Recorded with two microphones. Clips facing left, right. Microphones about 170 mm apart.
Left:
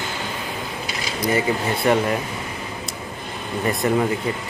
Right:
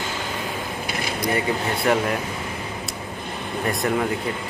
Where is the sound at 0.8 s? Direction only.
55° right (ahead or behind).